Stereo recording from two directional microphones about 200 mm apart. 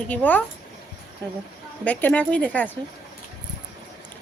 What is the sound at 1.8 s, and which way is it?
Speech, 10° left (ahead or behind).